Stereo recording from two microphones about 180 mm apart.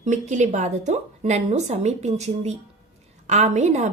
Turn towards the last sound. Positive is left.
turn(degrees=-40)  # may be behind; listen again after turning